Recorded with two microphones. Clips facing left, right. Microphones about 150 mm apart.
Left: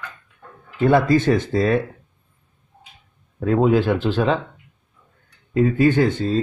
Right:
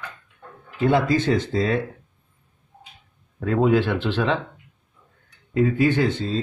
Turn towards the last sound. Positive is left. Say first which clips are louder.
# left 4 dB
turn(degrees=50)  # may be behind; listen again after turning